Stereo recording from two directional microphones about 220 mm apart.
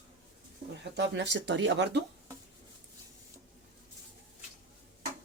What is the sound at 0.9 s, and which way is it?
Speech, 55° right (ahead or behind).